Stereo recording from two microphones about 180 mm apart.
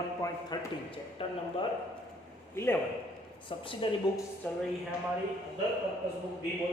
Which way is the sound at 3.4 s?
25° left (ahead or behind).